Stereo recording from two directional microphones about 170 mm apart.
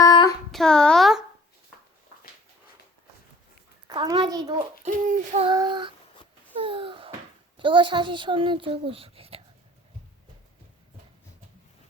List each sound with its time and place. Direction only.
0.0 s child singing: 20° left (ahead or behind)
0.5 s a woman's voice: 5° left (ahead or behind)
3.8 s a child's voice: 25° right (ahead or behind)
4.8 s speech: 45° right (ahead or behind)
5.4 s a child's voice: 25° right (ahead or behind)
6.6 s a sound: 30° right (ahead or behind)
7.5 s speech: 30° right (ahead or behind)